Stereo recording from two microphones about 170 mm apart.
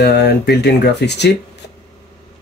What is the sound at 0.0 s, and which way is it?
Speech, 75° left (ahead or behind).